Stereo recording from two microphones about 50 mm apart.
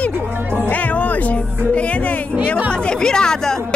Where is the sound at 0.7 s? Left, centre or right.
Left.